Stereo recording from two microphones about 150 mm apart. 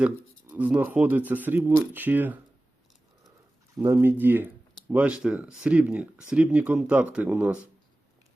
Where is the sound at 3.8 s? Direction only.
15° right (ahead or behind).